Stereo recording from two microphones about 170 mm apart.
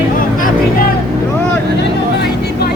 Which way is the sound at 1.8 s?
75° left (ahead or behind).